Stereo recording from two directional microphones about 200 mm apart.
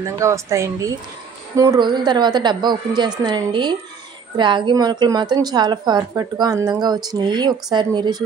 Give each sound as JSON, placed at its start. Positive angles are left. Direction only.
{"t": 0.0, "sound": "a woman's voice", "side_deg": -15}